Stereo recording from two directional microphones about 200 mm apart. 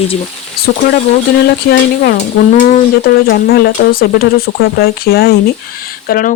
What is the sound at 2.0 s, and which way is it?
Speech, 45° left (ahead or behind).